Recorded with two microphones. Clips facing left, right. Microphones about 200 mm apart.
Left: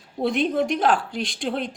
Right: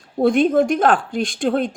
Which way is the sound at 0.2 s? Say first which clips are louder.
Right 7 dB; 50° right (ahead or behind).